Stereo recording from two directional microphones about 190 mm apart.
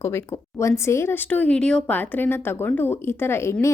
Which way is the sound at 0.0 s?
10° left (ahead or behind).